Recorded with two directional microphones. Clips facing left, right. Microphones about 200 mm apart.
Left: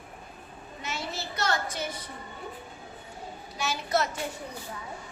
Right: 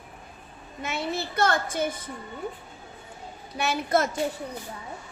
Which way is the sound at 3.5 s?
60° right (ahead or behind).